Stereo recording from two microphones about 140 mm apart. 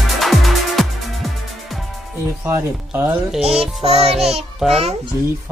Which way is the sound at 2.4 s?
15° right (ahead or behind).